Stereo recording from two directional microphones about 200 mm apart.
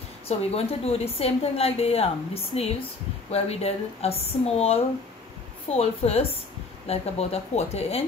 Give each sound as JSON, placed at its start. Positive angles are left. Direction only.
{"t": 0.3, "sound": "a woman's voice", "side_deg": 30}